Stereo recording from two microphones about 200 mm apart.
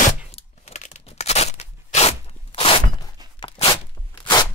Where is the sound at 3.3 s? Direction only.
25° left (ahead or behind).